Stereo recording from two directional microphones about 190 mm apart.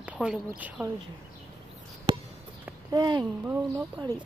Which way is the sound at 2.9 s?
20° right (ahead or behind).